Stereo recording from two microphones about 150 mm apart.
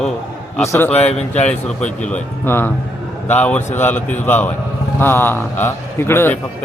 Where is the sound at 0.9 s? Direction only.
45° left (ahead or behind).